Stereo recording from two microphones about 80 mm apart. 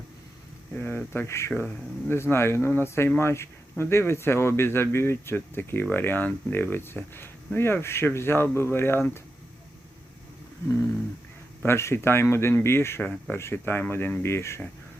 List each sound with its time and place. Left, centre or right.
0.7 s speech: left
11.6 s speech: left